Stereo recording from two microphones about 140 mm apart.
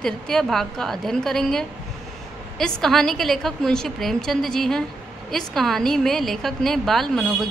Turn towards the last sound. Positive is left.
turn(degrees=0)  # may be behind; listen again after turning